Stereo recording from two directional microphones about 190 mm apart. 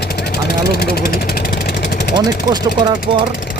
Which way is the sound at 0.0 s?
55° left (ahead or behind).